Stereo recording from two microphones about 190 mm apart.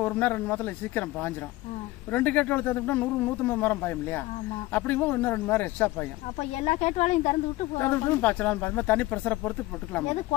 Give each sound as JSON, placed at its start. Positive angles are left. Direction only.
{"t": 0.0, "sound": "speech", "side_deg": 10}
{"t": 6.6, "sound": "speech", "side_deg": 35}
{"t": 7.8, "sound": "speech", "side_deg": 10}